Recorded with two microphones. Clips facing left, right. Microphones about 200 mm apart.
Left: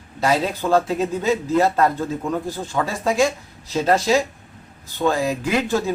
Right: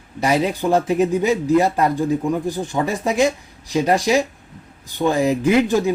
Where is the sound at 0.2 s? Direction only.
15° right (ahead or behind).